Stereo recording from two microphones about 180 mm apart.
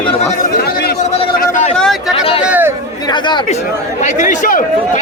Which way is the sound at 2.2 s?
30° left (ahead or behind).